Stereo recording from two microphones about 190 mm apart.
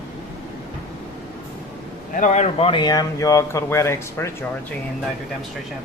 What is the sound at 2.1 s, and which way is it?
Speech, 40° left (ahead or behind).